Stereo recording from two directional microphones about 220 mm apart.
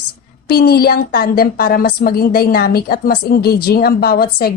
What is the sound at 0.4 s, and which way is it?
A woman's voice, 45° left (ahead or behind).